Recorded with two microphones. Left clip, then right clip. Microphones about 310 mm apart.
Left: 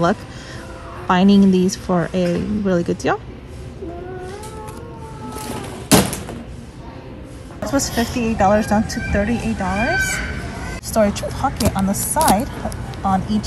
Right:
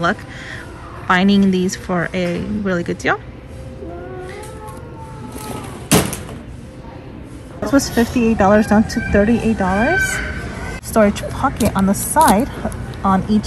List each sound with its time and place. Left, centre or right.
1.0 s a woman's voice: centre
5.4 s vehicle: centre
7.6 s speech: centre